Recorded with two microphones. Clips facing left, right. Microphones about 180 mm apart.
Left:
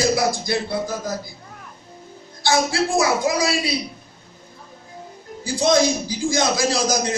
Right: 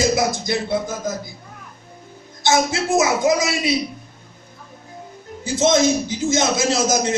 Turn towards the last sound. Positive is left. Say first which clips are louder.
# right 2 dB
turn(degrees=-25)  # may be behind; listen again after turning